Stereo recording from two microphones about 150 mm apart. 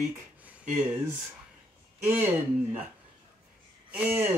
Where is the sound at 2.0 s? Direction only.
10° right (ahead or behind).